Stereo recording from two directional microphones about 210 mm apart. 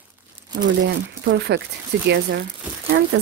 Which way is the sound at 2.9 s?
55° right (ahead or behind).